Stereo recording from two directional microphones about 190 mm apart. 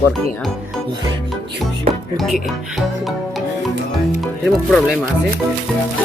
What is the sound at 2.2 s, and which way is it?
Speech, centre (ahead or behind).